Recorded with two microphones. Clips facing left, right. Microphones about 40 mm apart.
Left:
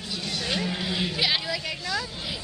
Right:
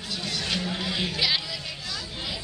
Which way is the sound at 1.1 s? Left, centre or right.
Centre.